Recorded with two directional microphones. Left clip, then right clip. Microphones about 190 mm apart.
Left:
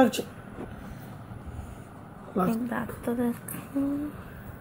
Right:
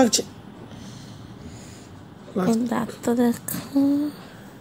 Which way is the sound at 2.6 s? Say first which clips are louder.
Right 7 dB; 35° right (ahead or behind).